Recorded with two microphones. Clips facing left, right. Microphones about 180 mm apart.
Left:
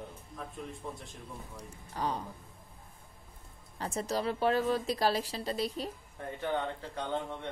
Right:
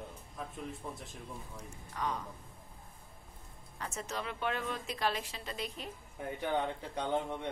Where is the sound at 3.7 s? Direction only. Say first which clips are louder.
Left 7 dB; 35° left (ahead or behind).